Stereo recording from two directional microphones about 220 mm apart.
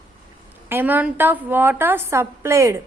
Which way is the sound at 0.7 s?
10° right (ahead or behind).